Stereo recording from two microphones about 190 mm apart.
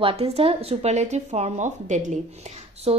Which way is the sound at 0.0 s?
30° right (ahead or behind).